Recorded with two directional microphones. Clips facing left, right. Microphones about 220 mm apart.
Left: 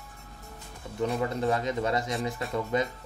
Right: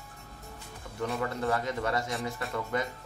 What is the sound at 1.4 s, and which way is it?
Speech, 20° left (ahead or behind).